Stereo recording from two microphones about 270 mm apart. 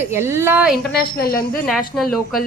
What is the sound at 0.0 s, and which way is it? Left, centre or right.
Speech, centre.